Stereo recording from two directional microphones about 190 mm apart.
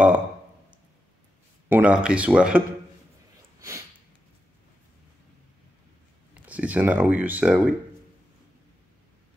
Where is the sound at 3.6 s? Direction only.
15° right (ahead or behind).